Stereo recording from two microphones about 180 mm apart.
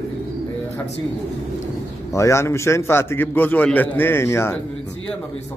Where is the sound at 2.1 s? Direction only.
15° left (ahead or behind).